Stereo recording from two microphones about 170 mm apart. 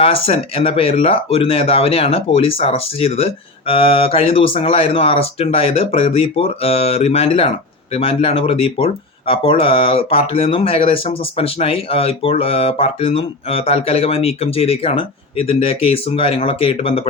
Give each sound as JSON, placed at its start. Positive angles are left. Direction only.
{"t": 0.0, "sound": "speech", "side_deg": 35}